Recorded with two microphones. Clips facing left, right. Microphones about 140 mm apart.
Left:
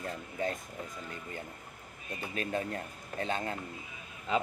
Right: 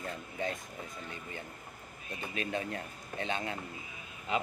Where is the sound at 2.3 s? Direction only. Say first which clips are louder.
Left 2 dB; 40° left (ahead or behind).